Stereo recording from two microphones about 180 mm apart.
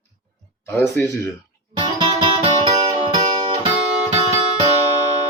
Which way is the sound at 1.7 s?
25° right (ahead or behind).